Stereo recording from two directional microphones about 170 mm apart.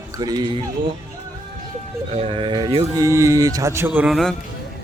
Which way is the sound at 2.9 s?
20° right (ahead or behind).